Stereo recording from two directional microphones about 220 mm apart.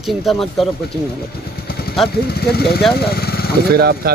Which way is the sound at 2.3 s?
45° left (ahead or behind).